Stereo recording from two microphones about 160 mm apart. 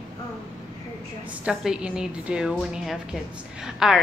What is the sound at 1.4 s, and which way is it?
A woman's voice, 5° right (ahead or behind).